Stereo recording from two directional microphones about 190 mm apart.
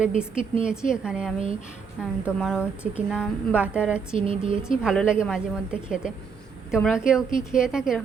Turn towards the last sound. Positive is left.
turn(degrees=-5)  # may be behind; listen again after turning